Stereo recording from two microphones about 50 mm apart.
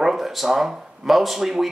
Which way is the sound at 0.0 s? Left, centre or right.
Centre.